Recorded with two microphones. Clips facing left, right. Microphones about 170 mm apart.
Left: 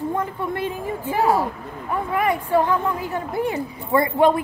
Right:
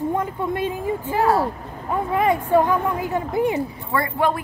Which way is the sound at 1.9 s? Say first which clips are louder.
Right 2 dB; 20° right (ahead or behind).